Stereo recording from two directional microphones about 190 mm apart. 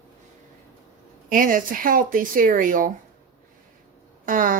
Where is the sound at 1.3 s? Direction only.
45° right (ahead or behind).